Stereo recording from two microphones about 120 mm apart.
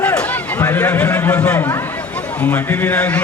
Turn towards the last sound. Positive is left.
turn(degrees=10)  # may be behind; listen again after turning